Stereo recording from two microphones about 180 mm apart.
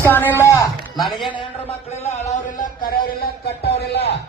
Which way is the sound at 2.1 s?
40° left (ahead or behind).